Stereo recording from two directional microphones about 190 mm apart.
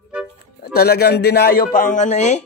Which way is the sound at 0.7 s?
55° left (ahead or behind).